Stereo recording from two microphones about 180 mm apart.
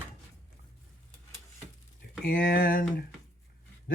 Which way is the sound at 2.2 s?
55° left (ahead or behind).